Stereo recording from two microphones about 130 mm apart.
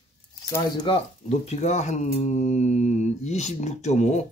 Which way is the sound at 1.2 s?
55° left (ahead or behind).